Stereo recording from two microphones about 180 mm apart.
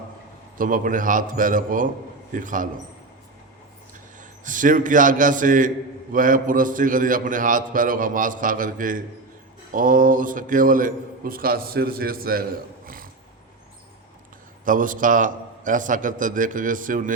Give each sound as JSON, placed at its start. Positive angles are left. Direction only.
{"t": 0.5, "sound": "a man's voice", "side_deg": -50}
{"t": 4.2, "sound": "a man's voice", "side_deg": -45}
{"t": 14.6, "sound": "a man's voice", "side_deg": -50}